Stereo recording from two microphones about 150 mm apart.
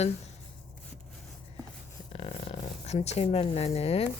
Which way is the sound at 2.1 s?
40° left (ahead or behind).